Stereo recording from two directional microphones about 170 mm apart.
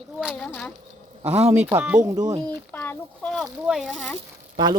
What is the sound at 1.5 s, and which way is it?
Speech, 15° right (ahead or behind).